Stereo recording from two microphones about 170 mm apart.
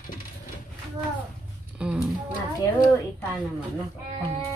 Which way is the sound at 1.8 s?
5° right (ahead or behind).